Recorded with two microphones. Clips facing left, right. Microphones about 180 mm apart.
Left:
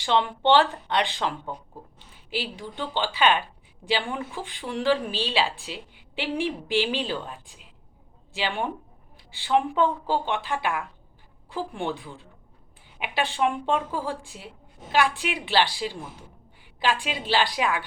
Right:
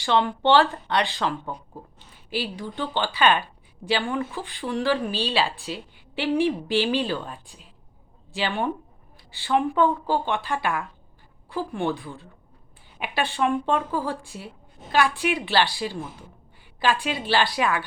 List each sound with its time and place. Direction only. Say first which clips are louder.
0.0 s speech: right 1 dB; 20° left (ahead or behind)
2.6 s speech: right 2 dB; 15° left (ahead or behind)